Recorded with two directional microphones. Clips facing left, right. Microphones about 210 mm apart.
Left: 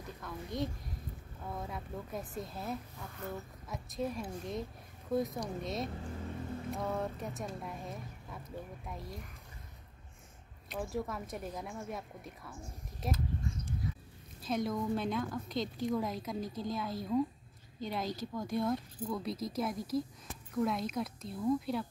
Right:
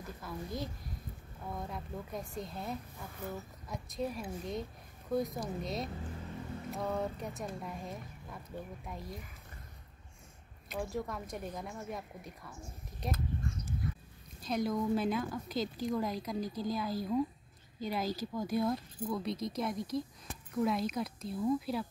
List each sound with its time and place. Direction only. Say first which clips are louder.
0.2 s a woman's voice: left 3 dB; centre (ahead or behind)
10.7 s a woman's voice: even; centre (ahead or behind)
13.5 s a sound: even; 55° right (ahead or behind)
14.4 s a woman's voice: right 1 dB; centre (ahead or behind)